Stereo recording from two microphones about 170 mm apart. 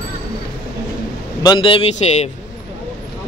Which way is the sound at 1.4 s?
25° left (ahead or behind).